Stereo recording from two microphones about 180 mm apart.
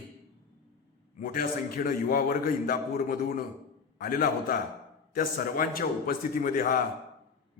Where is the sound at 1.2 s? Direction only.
50° left (ahead or behind).